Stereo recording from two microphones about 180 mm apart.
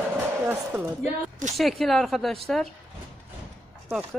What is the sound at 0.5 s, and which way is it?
Speech, 5° right (ahead or behind).